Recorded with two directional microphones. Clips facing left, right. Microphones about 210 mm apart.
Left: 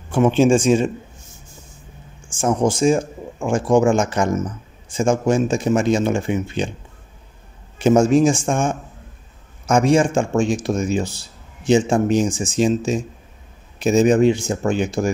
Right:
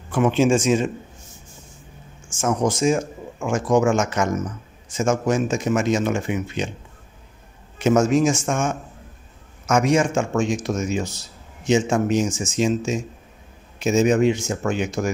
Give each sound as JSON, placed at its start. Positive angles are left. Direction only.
{"t": 0.1, "sound": "speech", "side_deg": 30}
{"t": 2.2, "sound": "speech", "side_deg": 30}
{"t": 7.8, "sound": "speech", "side_deg": 30}